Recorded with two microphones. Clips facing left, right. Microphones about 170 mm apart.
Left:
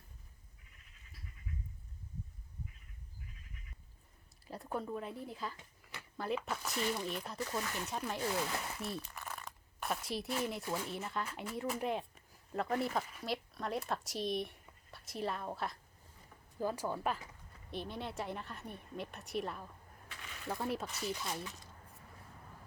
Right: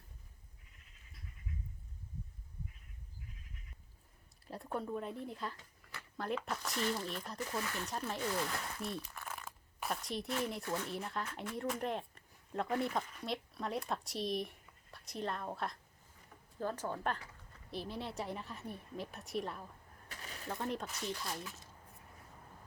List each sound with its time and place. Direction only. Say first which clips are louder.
4.4 s speech: even; centre (ahead or behind)
5.5 s a sound: left 1 dB; 20° left (ahead or behind)
6.1 s speech: left 1 dB; centre (ahead or behind)